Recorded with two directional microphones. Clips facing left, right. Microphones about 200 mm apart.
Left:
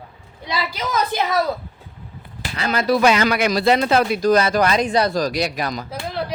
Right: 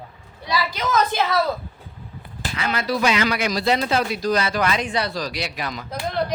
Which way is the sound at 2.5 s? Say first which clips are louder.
Left 5 dB; 40° left (ahead or behind).